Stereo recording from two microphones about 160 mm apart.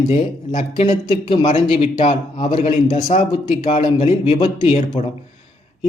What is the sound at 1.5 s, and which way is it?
Speech, 45° left (ahead or behind).